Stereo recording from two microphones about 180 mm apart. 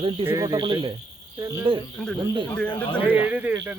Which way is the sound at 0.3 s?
20° right (ahead or behind).